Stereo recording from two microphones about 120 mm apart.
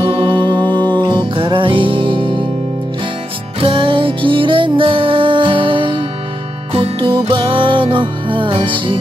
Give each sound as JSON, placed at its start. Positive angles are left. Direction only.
{"t": 0.0, "sound": "music", "side_deg": -40}
{"t": 3.6, "sound": "music", "side_deg": -45}